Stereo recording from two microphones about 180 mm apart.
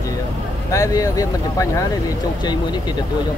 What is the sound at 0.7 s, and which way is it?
Speech, 20° left (ahead or behind).